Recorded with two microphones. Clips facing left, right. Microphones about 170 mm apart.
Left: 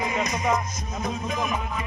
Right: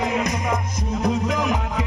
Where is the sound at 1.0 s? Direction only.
80° right.